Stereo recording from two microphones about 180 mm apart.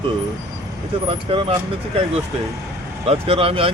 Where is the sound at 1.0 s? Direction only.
30° right (ahead or behind).